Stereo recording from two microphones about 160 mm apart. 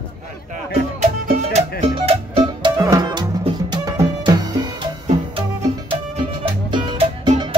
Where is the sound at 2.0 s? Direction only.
30° right (ahead or behind).